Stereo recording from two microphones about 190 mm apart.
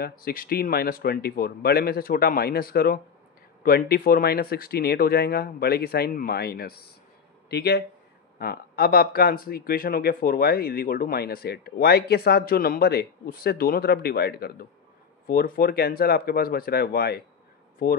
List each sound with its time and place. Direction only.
0.0 s speech: 50° left (ahead or behind)